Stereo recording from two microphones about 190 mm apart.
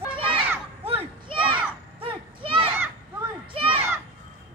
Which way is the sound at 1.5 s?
30° right (ahead or behind).